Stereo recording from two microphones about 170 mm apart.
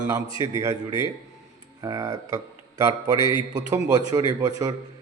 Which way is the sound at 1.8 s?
20° right (ahead or behind).